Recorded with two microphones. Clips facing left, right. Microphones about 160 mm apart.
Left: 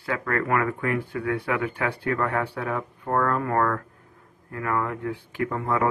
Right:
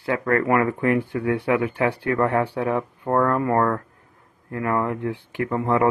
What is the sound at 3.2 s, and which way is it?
Speech, 15° right (ahead or behind).